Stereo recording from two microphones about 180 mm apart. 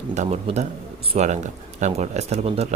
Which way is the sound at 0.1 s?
40° right (ahead or behind).